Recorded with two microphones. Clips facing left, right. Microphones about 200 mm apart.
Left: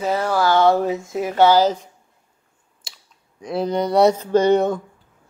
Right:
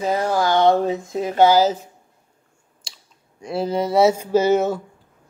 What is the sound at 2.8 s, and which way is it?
Speech, centre (ahead or behind).